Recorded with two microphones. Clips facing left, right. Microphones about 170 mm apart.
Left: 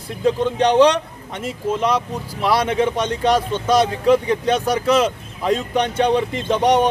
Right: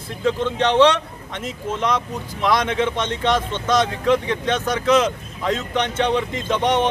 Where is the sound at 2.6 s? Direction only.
35° left (ahead or behind).